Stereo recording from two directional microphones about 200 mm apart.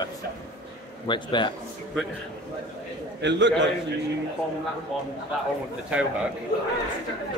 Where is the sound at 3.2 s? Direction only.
60° right (ahead or behind).